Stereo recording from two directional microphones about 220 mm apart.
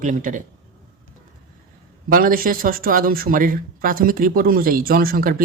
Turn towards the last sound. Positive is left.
turn(degrees=-40)  # may be behind; listen again after turning